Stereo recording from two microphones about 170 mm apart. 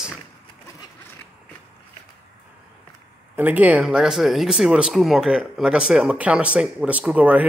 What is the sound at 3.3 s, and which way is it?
Speech, 10° right (ahead or behind).